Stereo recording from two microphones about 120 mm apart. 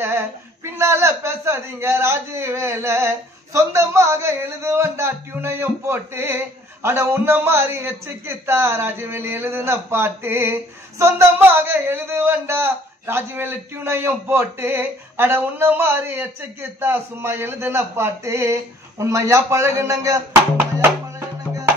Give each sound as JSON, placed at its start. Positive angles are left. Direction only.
{"t": 0.7, "sound": "speech", "side_deg": -20}